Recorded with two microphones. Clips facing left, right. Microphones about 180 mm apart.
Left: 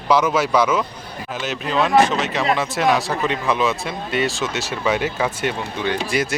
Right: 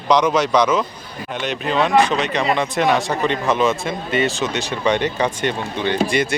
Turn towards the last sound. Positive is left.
turn(degrees=0)  # may be behind; listen again after turning